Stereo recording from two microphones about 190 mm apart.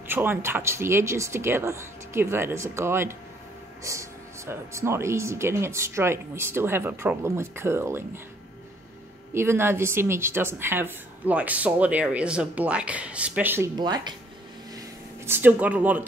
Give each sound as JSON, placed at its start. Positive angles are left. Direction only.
{"t": 0.1, "sound": "speech", "side_deg": -10}
{"t": 9.3, "sound": "speech", "side_deg": -15}
{"t": 13.7, "sound": "speech", "side_deg": -20}
{"t": 14.8, "sound": "a sound", "side_deg": -10}